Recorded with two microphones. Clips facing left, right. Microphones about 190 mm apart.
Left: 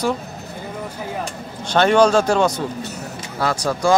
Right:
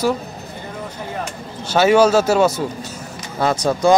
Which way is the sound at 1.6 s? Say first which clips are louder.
Right 1 dB; 5° right (ahead or behind).